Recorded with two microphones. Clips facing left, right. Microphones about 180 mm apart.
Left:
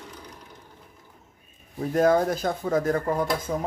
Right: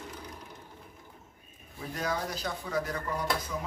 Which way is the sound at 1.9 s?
50° left (ahead or behind).